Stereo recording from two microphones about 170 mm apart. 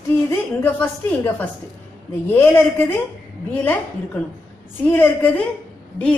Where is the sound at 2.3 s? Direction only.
10° left (ahead or behind).